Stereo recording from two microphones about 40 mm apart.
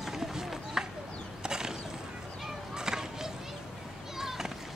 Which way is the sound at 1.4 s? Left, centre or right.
Centre.